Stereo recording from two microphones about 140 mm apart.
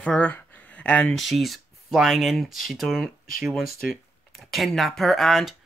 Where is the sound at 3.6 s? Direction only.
90° left.